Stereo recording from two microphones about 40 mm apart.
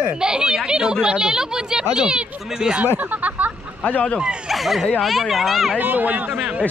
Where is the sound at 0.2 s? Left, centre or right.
Centre.